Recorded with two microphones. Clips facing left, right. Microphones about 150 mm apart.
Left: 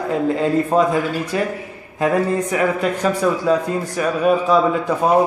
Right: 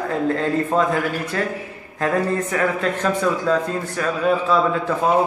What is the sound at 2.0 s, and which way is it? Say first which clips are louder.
A man's voice: left 3 dB; 15° left (ahead or behind).